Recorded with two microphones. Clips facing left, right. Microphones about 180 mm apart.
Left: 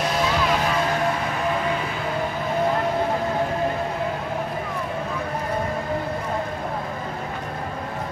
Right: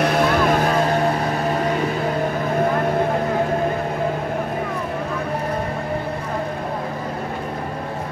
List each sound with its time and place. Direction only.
0.0 s vehicle: 55° right (ahead or behind)